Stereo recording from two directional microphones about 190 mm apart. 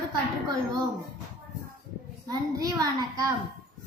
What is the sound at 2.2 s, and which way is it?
A child's voice, 20° right (ahead or behind).